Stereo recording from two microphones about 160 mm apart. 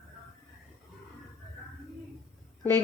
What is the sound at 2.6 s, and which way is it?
Speech, 15° left (ahead or behind).